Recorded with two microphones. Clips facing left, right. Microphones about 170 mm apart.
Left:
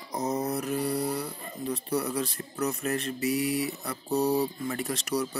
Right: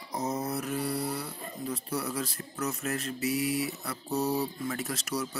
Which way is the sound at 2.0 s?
5° right (ahead or behind).